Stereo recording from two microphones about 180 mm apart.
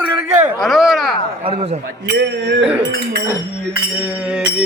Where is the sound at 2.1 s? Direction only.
65° right (ahead or behind).